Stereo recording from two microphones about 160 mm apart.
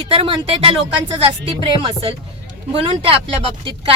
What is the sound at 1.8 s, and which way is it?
A woman's voice, 35° right (ahead or behind).